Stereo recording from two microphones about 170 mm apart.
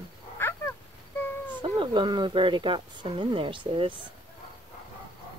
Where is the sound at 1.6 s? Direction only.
30° right (ahead or behind).